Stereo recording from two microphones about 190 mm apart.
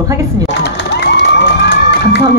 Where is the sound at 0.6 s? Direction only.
65° left (ahead or behind).